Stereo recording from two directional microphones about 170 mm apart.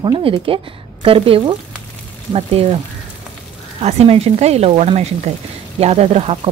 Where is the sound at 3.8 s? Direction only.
40° right (ahead or behind).